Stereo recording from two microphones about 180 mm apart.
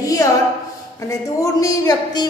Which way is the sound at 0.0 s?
20° left (ahead or behind).